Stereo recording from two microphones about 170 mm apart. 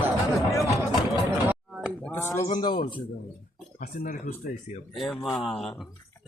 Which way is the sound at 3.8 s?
60° left (ahead or behind).